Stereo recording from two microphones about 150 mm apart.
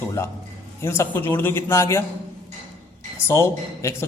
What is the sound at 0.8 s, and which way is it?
Speech, 15° left (ahead or behind).